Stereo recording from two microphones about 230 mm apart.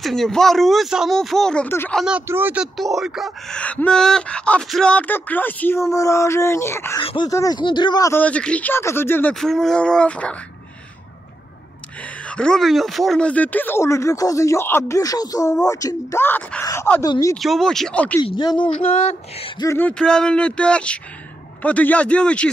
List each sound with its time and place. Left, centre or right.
0.0 s speech: centre
12.3 s speech: centre
17.4 s speech: centre
18.2 s speech: centre
19.6 s speech: centre